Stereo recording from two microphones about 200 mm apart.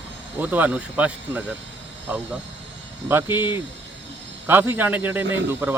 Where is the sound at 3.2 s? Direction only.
20° left (ahead or behind).